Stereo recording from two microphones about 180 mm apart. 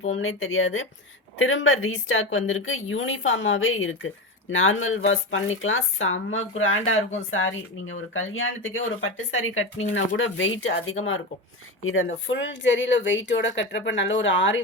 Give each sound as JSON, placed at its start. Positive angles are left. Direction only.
{"t": 0.2, "sound": "speech", "side_deg": 90}
{"t": 11.9, "sound": "speech", "side_deg": 90}